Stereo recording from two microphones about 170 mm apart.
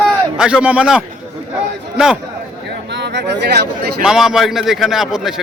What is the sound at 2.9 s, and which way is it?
Speech, 90° right.